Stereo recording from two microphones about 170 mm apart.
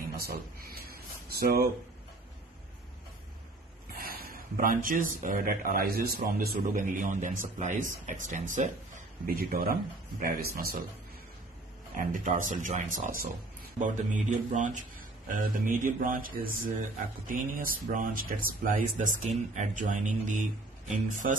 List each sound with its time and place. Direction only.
0.2 s a sound: 60° right (ahead or behind)
3.9 s speech: 60° right (ahead or behind)
12.0 s speech: 50° right (ahead or behind)